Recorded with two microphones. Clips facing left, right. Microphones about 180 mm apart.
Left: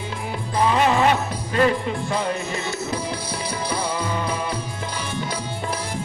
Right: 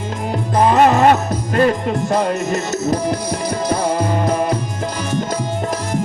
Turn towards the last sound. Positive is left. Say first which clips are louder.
# right 8 dB
turn(degrees=-45)  # may be behind; listen again after turning